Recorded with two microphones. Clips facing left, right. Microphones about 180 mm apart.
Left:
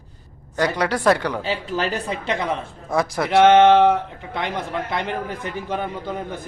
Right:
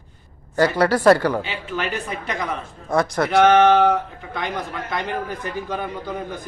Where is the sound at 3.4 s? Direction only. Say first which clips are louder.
Left 2 dB; 25° left (ahead or behind).